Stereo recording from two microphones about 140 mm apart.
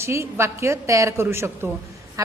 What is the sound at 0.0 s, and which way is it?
A woman's voice, 20° right (ahead or behind).